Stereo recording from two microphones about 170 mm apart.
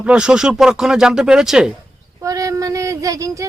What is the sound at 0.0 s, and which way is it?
Speech, 5° right (ahead or behind).